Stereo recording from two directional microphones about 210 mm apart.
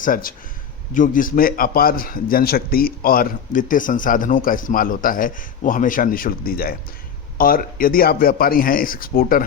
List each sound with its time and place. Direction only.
0.0 s a man's voice: 40° left (ahead or behind)